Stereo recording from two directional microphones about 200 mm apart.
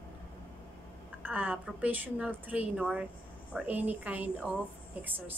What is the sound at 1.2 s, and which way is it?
A woman's voice, 10° right (ahead or behind).